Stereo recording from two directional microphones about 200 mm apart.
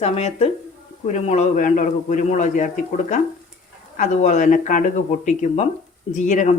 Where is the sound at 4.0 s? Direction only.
35° left (ahead or behind).